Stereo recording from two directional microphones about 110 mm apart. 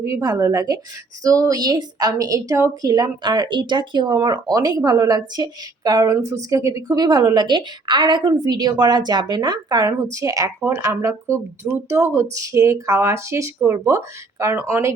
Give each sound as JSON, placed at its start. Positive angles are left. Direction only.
{"t": 0.0, "sound": "a woman's voice", "side_deg": -30}